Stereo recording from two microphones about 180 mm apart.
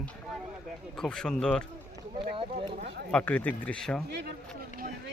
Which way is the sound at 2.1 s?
25° right (ahead or behind).